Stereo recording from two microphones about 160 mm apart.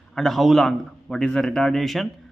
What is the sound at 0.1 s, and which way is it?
A man's voice, centre (ahead or behind).